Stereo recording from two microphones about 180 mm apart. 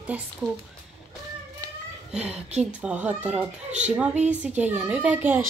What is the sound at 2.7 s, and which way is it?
A child's voice, 10° right (ahead or behind).